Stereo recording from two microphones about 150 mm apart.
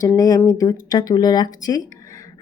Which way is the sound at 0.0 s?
25° left (ahead or behind).